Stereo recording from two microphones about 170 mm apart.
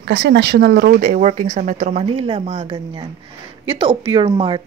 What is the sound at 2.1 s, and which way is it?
Speech, 30° right (ahead or behind).